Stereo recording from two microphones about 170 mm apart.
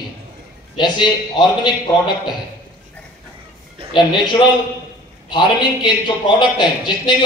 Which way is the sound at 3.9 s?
25° left (ahead or behind).